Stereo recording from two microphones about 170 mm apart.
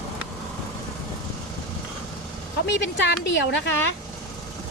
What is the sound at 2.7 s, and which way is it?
A woman's voice, 90° left.